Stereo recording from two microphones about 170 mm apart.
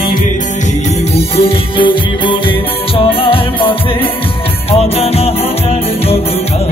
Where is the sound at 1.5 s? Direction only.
30° left (ahead or behind).